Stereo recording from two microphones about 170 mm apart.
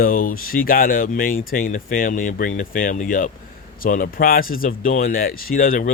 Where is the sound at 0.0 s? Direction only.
55° left (ahead or behind).